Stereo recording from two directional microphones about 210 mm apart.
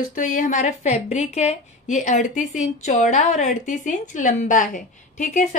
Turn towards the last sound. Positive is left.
turn(degrees=35)  # may be behind; listen again after turning